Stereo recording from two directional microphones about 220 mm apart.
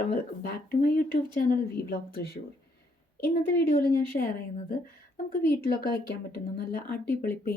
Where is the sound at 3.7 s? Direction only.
40° left (ahead or behind).